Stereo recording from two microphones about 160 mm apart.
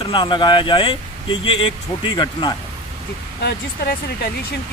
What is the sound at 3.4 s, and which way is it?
Speech, 75° left (ahead or behind).